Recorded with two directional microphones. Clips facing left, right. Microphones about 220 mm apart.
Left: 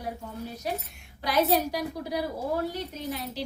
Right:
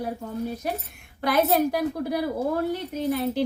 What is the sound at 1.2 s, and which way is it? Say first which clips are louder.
A woman's voice: right 3 dB; 55° right (ahead or behind).